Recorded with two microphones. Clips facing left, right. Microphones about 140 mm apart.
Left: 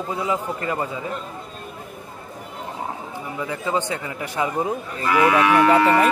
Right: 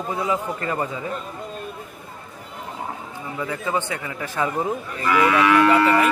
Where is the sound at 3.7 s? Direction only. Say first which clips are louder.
Left 3 dB; 20° left (ahead or behind).